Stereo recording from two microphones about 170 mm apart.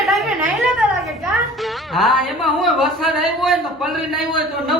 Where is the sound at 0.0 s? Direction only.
Centre (ahead or behind).